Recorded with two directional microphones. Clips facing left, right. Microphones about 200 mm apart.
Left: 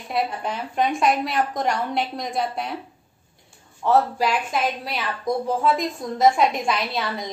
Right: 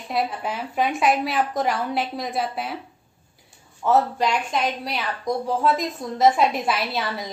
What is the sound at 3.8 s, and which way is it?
Speech, centre (ahead or behind).